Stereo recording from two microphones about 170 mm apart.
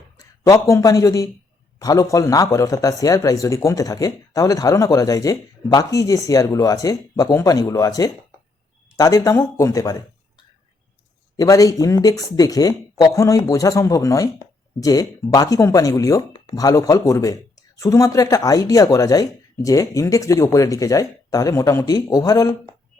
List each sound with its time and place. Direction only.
0.4 s speech: 20° left (ahead or behind)